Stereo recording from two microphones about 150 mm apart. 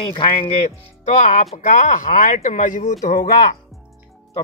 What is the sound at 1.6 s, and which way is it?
Speech, 60° left (ahead or behind).